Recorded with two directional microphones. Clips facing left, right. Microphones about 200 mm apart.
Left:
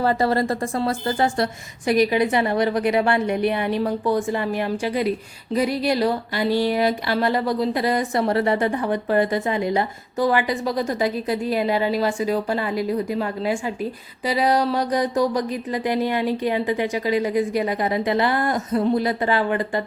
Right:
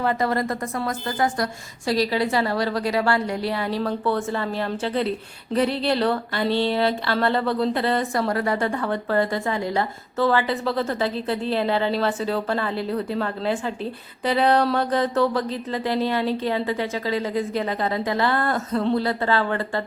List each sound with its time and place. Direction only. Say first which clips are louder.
0.0 s a woman's voice: left 3 dB; 35° left (ahead or behind); by 19.8 s 15° left (ahead or behind)